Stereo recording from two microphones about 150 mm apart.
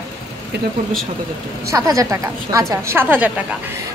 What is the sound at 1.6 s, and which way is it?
A woman's voice, 20° right (ahead or behind).